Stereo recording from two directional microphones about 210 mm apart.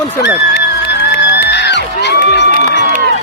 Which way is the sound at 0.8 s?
55° left (ahead or behind).